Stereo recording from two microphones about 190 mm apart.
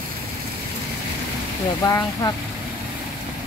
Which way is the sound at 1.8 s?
15° left (ahead or behind).